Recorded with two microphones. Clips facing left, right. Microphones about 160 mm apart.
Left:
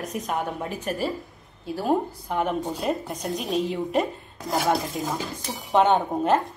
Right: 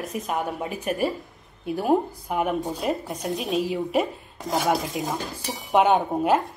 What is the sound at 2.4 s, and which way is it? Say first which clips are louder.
A woman's voice: right 1 dB; centre (ahead or behind).